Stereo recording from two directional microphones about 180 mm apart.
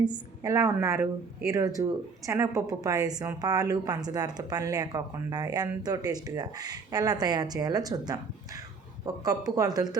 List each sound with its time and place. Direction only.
0.0 s a woman's voice: 20° right (ahead or behind)